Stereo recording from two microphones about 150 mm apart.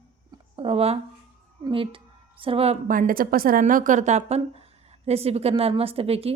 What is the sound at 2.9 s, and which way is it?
A woman's voice, 70° right (ahead or behind).